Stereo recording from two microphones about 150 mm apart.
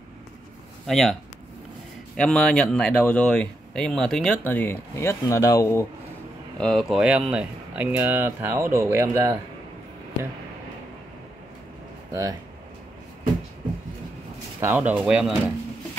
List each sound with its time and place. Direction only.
0.8 s speech: centre (ahead or behind)
2.1 s speech: 5° left (ahead or behind)
6.6 s speech: centre (ahead or behind); by 9.4 s 15° right (ahead or behind)
12.1 s speech: 20° right (ahead or behind)
14.6 s speech: 10° right (ahead or behind)